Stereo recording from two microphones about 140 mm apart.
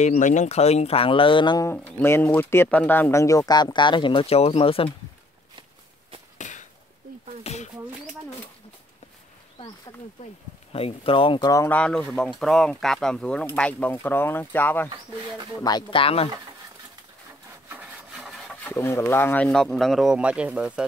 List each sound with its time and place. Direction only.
0.0 s speech: 60° left (ahead or behind); by 1.7 s 30° left (ahead or behind)
1.7 s speech: 15° left (ahead or behind); by 4.8 s 45° left (ahead or behind)
6.3 s a sound: 60° left (ahead or behind)
7.5 s a sound: 50° left (ahead or behind)
10.7 s speech: 45° left (ahead or behind); by 11.7 s 25° left (ahead or behind)
11.7 s speech: 10° left (ahead or behind)
14.9 s speech: 30° right (ahead or behind)
15.6 s speech: 35° left (ahead or behind)
17.6 s wood: 5° right (ahead or behind)
18.6 s speech: 20° left (ahead or behind); by 20.8 s 5° right (ahead or behind)